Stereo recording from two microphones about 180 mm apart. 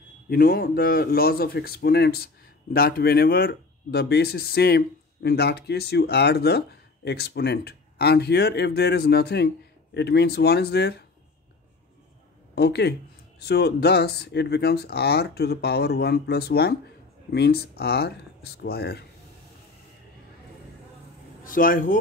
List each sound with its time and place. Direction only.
0.3 s a man's voice: 55° left (ahead or behind)
12.5 s a man's voice: 65° left (ahead or behind)
21.5 s a man's voice: 50° left (ahead or behind)